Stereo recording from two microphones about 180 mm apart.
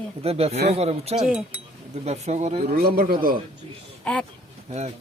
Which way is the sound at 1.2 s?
5° right (ahead or behind).